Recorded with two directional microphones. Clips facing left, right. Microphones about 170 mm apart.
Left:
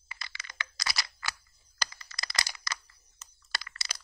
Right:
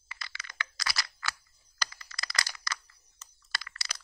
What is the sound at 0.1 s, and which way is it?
Computer keyboard, 20° left (ahead or behind).